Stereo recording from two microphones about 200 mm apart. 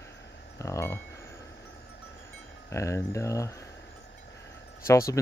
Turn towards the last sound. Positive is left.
turn(degrees=15)  # may be behind; listen again after turning